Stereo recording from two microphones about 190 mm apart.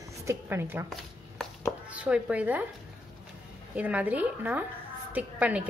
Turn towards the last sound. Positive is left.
turn(degrees=-5)  # may be behind; listen again after turning